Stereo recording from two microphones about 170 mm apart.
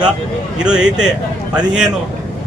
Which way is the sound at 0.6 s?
5° right (ahead or behind).